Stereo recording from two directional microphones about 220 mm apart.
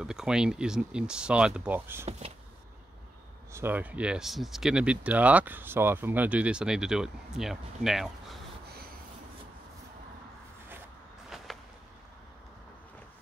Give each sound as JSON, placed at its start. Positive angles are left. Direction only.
{"t": 0.0, "sound": "speech", "side_deg": -5}
{"t": 2.0, "sound": "speech", "side_deg": -30}
{"t": 3.5, "sound": "speech", "side_deg": -10}
{"t": 11.2, "sound": "a sound", "side_deg": 0}